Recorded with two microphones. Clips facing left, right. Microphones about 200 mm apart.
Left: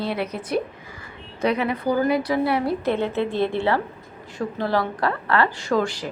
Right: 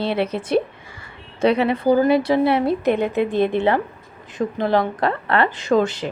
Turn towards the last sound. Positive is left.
turn(degrees=-20)  # may be behind; listen again after turning